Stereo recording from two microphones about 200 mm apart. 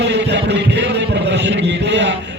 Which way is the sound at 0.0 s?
60° right (ahead or behind).